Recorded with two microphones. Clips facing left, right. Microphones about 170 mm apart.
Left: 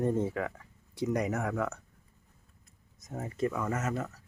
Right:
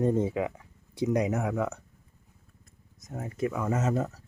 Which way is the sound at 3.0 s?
Centre (ahead or behind).